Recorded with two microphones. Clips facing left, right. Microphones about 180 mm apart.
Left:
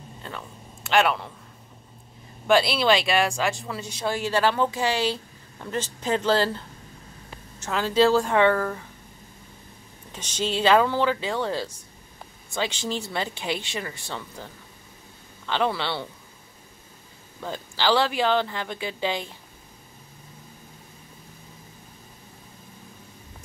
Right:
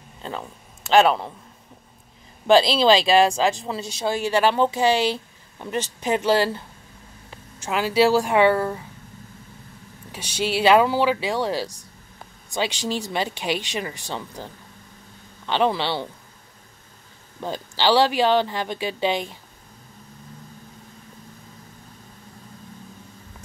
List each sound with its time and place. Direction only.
0.2 s a sound: 30° right (ahead or behind)
0.9 s speech: 35° right (ahead or behind)
2.7 s a woman's voice: 30° right (ahead or behind); by 6.6 s 10° right (ahead or behind)
7.6 s a woman's voice: 10° right (ahead or behind)
10.1 s a woman's voice: 10° right (ahead or behind)
15.4 s a woman's voice: 20° right (ahead or behind)
17.4 s a woman's voice: 20° right (ahead or behind)